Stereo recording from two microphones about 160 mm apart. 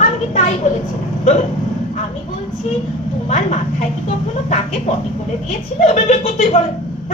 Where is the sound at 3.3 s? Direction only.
45° left (ahead or behind).